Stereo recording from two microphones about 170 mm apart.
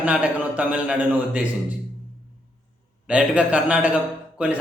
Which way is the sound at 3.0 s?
5° right (ahead or behind).